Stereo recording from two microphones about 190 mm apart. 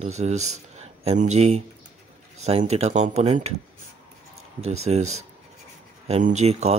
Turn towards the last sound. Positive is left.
turn(degrees=-35)  # may be behind; listen again after turning